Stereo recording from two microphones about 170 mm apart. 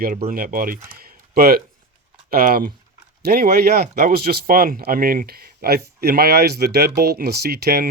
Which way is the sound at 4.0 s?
55° right (ahead or behind).